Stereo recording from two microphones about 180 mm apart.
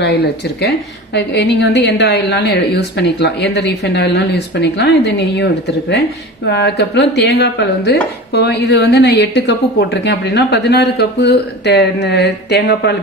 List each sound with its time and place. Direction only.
0.0 s a woman's voice: 65° left (ahead or behind)